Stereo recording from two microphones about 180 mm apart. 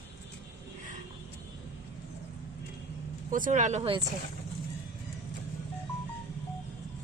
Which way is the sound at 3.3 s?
45° right (ahead or behind).